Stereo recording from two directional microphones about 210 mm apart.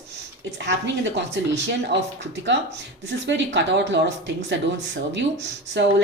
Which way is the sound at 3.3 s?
60° right (ahead or behind).